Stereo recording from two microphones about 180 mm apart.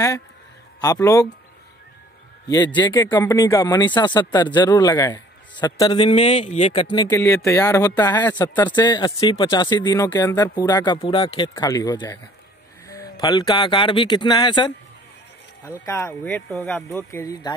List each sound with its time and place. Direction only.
0.9 s speech: 15° left (ahead or behind)
2.4 s speech: 20° left (ahead or behind)
7.1 s speech: 15° left (ahead or behind)
15.8 s speech: 15° left (ahead or behind)